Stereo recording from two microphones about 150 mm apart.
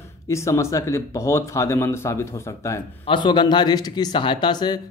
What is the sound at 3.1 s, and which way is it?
Speech, 30° left (ahead or behind).